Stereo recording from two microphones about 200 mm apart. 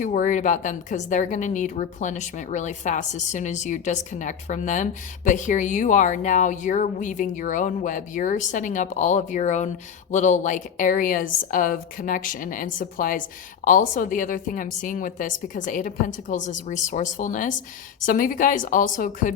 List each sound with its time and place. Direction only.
0.0 s a woman's voice: 40° left (ahead or behind)